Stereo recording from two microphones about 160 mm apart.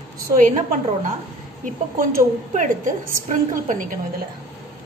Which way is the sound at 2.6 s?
55° right (ahead or behind).